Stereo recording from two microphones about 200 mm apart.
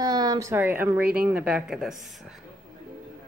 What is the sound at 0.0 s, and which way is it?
Speech, 20° right (ahead or behind).